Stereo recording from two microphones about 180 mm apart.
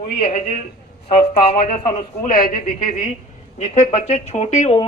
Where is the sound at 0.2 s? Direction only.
35° left (ahead or behind).